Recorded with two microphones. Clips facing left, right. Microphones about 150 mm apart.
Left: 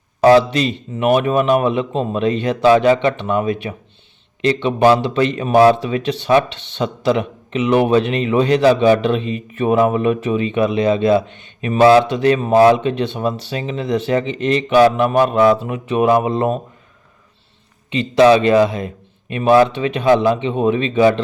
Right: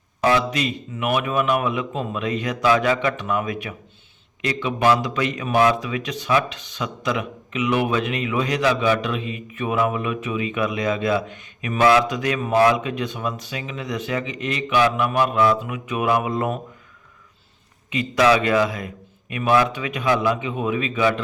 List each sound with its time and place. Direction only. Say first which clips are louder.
0.2 s speech: left 9 dB; 35° left (ahead or behind)
18.2 s speech: left 7 dB; 25° left (ahead or behind)